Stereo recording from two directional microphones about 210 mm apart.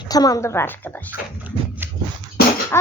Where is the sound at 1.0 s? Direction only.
10° right (ahead or behind).